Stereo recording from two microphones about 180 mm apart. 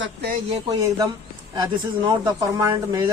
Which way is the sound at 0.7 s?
20° right (ahead or behind).